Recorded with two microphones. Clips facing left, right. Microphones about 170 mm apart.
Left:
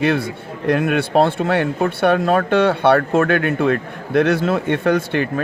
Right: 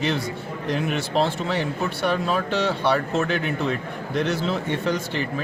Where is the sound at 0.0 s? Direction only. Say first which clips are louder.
Left 6 dB; 60° left (ahead or behind).